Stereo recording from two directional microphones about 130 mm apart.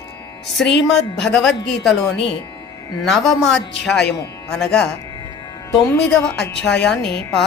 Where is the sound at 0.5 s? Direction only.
Centre (ahead or behind).